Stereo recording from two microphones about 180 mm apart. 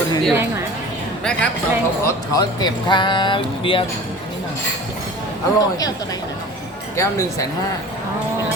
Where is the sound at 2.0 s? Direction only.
20° left (ahead or behind).